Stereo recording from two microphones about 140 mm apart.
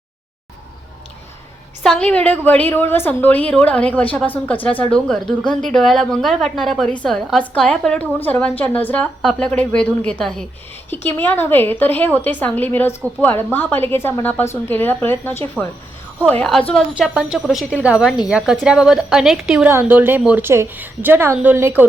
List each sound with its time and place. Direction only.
1.8 s a woman's voice: 5° left (ahead or behind)
17.0 s a woman's voice: 5° right (ahead or behind)